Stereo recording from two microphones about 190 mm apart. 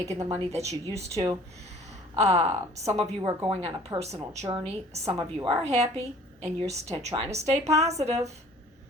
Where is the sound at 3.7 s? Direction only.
20° right (ahead or behind).